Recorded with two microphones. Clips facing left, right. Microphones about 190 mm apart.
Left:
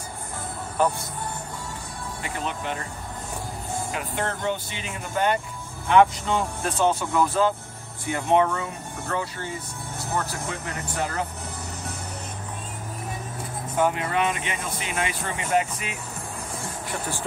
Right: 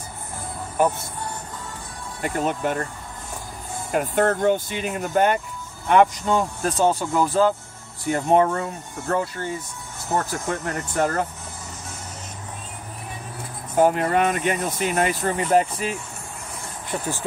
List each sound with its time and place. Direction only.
0.8 s speech: 10° right (ahead or behind)
2.2 s speech: 45° right (ahead or behind)
3.9 s speech: 45° right (ahead or behind)
10.5 s speech: 50° right (ahead or behind)
13.7 s speech: 45° right (ahead or behind)